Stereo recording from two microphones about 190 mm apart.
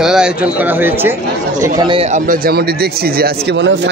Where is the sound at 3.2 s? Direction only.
70° right (ahead or behind).